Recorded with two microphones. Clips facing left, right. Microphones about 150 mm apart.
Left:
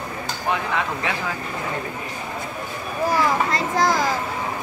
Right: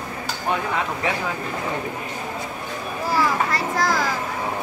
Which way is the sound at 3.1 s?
20° left (ahead or behind).